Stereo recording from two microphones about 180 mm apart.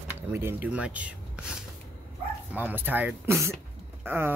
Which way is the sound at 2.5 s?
10° right (ahead or behind).